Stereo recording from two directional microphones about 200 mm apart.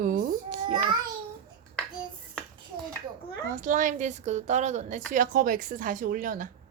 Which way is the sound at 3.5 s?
40° right (ahead or behind).